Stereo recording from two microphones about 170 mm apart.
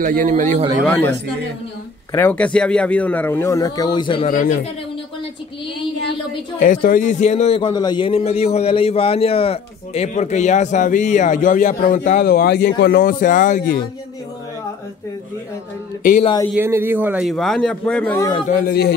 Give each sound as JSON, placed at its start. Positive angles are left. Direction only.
{"t": 0.0, "sound": "a man's voice", "side_deg": -50}
{"t": 0.8, "sound": "speech", "side_deg": 10}
{"t": 4.3, "sound": "a man's voice", "side_deg": 50}
{"t": 6.6, "sound": "a man's voice", "side_deg": 55}
{"t": 16.0, "sound": "a man's voice", "side_deg": 50}
{"t": 16.5, "sound": "a man's voice", "side_deg": -15}
{"t": 18.5, "sound": "speech", "side_deg": 60}